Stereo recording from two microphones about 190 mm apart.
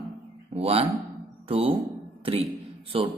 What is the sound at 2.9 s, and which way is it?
Speech, 30° right (ahead or behind).